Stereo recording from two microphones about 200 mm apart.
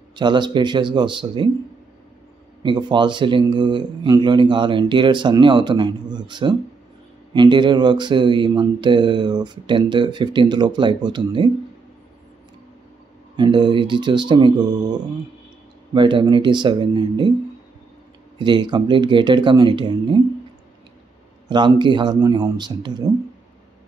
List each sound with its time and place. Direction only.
0.1 s mantra: 20° right (ahead or behind)
2.6 s mantra: 20° right (ahead or behind)
13.4 s mantra: 20° right (ahead or behind)
18.4 s mantra: 20° right (ahead or behind)
21.5 s mantra: 20° right (ahead or behind)